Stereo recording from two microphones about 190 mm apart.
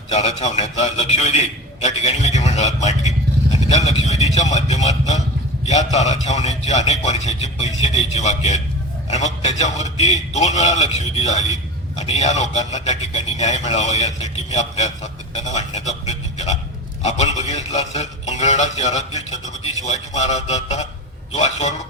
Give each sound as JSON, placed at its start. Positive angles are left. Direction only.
{"t": 0.1, "sound": "a man's voice", "side_deg": 35}